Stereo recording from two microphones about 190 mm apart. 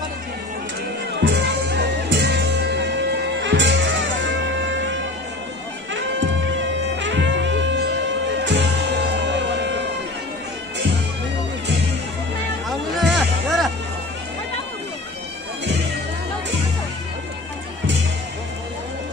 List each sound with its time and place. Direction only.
1.2 s music: 65° right (ahead or behind)
5.9 s music: 75° right (ahead or behind)
12.6 s music: centre (ahead or behind)